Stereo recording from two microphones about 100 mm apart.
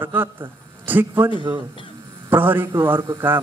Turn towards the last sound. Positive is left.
turn(degrees=-20)  # may be behind; listen again after turning